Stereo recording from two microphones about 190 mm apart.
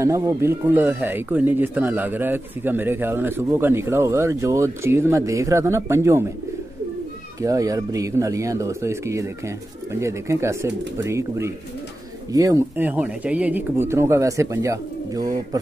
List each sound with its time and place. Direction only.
0.0 s speech: 15° right (ahead or behind)
7.4 s speech: 20° right (ahead or behind)